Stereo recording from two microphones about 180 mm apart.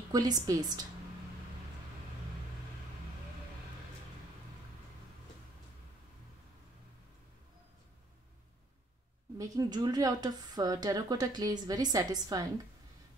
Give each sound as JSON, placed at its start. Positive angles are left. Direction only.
{"t": 0.1, "sound": "a woman's voice", "side_deg": -20}
{"t": 9.4, "sound": "a woman's voice", "side_deg": -20}